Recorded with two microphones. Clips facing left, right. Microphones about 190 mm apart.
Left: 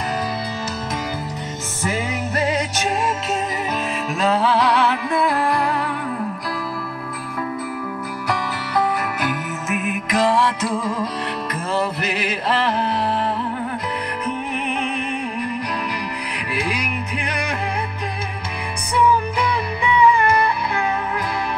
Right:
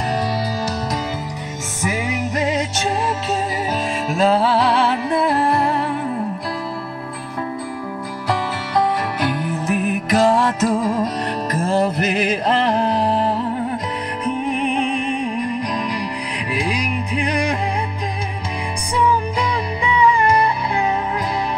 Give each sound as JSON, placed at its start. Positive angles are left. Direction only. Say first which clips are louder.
{"t": 1.8, "sound": "music", "louder": "right 2 dB", "side_deg": -15}
{"t": 4.1, "sound": "music", "louder": "right 3 dB", "side_deg": -35}
{"t": 8.3, "sound": "music", "louder": "right 3 dB", "side_deg": -30}
{"t": 14.5, "sound": "music", "louder": "right 4 dB", "side_deg": -35}
{"t": 16.6, "sound": "music", "louder": "right 3 dB", "side_deg": -35}
{"t": 19.8, "sound": "music", "louder": "left 1 dB", "side_deg": -35}